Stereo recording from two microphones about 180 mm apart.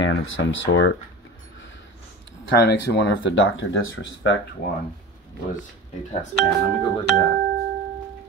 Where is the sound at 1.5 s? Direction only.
90° left.